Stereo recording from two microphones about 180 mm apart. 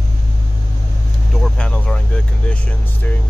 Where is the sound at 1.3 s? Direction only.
5° left (ahead or behind).